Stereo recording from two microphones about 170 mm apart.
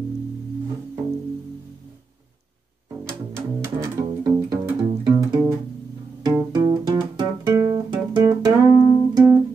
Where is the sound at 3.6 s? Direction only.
20° right (ahead or behind).